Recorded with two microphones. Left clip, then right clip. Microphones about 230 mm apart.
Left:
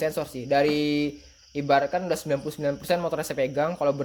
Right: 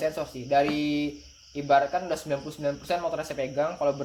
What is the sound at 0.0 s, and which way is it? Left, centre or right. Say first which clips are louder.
Speech: left 2 dB; left.